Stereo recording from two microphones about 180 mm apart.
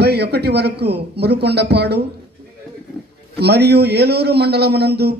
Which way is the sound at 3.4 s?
65° right (ahead or behind).